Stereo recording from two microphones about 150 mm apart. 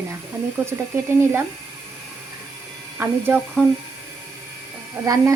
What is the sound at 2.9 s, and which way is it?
Speech, 15° right (ahead or behind).